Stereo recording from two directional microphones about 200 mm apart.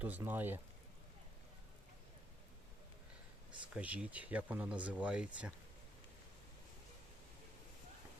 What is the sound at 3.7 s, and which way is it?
Speech, 5° right (ahead or behind).